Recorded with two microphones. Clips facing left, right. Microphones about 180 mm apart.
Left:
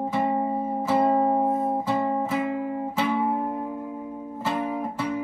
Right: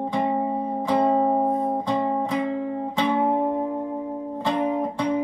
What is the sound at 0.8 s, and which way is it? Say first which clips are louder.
Music: right 1 dB; 5° left (ahead or behind).